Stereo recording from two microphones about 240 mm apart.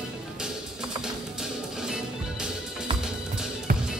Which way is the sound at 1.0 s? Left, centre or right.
Centre.